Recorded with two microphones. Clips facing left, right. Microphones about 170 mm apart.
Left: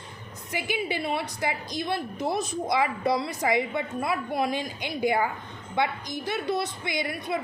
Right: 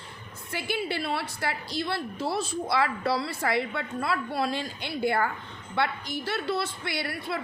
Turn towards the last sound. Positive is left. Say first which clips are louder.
# left 3 dB
turn(degrees=20)  # may be behind; listen again after turning